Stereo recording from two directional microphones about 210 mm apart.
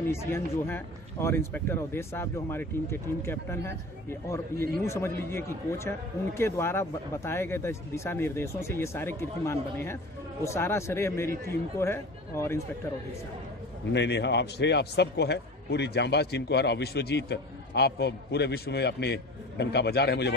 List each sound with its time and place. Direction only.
0.1 s a man's voice: 10° left (ahead or behind)
13.9 s a man's voice: 55° left (ahead or behind)